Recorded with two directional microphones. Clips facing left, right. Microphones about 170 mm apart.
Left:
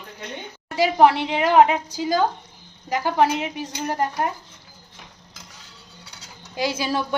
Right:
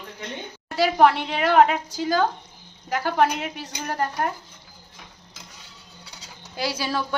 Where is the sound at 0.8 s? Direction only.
15° left (ahead or behind).